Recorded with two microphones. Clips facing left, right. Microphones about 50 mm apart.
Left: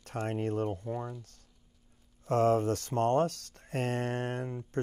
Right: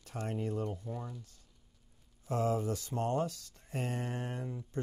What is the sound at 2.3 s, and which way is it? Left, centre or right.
Speech, left.